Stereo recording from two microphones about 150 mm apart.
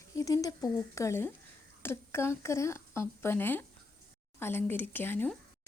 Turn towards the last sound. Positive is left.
turn(degrees=15)  # may be behind; listen again after turning